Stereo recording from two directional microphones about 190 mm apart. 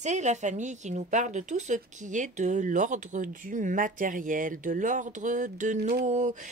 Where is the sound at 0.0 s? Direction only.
40° right (ahead or behind).